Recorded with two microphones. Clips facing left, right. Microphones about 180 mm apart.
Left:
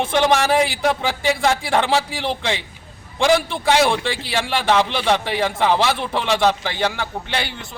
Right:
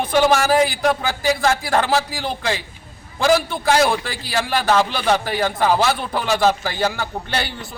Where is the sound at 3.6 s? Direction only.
Centre (ahead or behind).